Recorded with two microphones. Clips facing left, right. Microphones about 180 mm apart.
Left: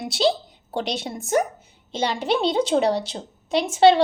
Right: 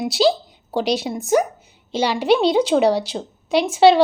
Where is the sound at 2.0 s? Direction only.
75° right (ahead or behind).